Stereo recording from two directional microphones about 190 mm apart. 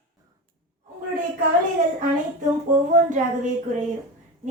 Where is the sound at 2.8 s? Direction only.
40° right (ahead or behind).